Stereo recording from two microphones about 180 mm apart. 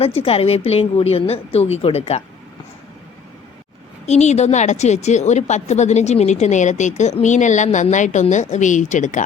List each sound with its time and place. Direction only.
0.0 s a woman's voice: 35° left (ahead or behind)
4.0 s a woman's voice: 40° left (ahead or behind)